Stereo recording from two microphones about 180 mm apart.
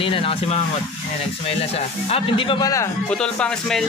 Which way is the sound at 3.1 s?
5° left (ahead or behind).